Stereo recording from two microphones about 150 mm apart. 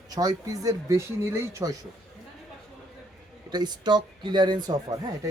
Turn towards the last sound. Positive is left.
turn(degrees=-25)  # may be behind; listen again after turning